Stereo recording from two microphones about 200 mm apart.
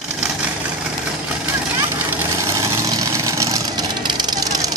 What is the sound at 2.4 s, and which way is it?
Vehicle, 15° right (ahead or behind).